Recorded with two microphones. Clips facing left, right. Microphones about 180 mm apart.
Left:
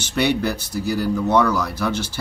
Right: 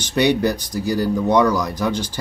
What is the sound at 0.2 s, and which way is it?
Speech, 15° right (ahead or behind).